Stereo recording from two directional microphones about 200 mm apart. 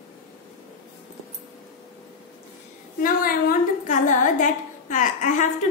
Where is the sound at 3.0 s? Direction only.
45° left (ahead or behind).